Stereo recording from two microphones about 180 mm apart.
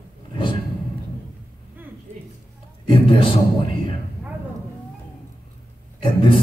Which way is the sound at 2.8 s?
30° left (ahead or behind).